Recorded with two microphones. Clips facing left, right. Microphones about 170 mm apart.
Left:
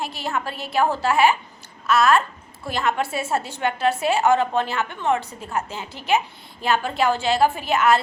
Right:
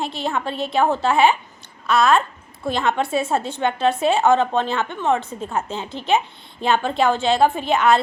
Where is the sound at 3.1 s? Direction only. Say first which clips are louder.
Right 4 dB; 25° right (ahead or behind).